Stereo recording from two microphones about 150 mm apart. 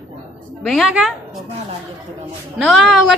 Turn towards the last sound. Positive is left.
turn(degrees=0)  # may be behind; listen again after turning